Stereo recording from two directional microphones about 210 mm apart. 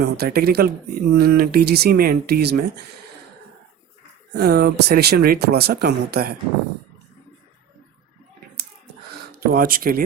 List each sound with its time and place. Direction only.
0.0 s speech: 50° right (ahead or behind)
4.4 s speech: 50° right (ahead or behind)
9.3 s speech: 45° right (ahead or behind)